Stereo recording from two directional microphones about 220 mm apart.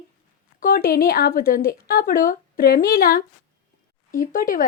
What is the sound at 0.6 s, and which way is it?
A woman's voice, 45° left (ahead or behind).